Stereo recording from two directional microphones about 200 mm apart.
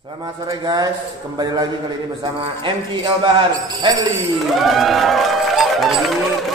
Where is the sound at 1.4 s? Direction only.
20° right (ahead or behind).